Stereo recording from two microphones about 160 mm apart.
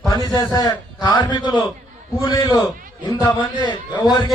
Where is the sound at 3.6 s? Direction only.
25° left (ahead or behind).